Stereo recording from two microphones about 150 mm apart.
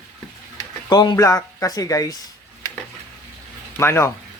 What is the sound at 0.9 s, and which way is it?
Speech, 25° left (ahead or behind).